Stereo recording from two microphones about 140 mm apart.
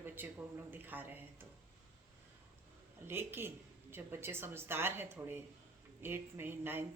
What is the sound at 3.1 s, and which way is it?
A woman's voice, 15° right (ahead or behind).